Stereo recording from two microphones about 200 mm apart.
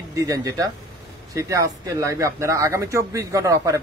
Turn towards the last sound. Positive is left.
turn(degrees=-15)  # may be behind; listen again after turning